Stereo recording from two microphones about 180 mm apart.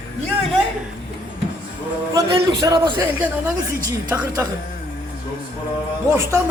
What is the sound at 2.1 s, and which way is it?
A man's voice, 20° right (ahead or behind).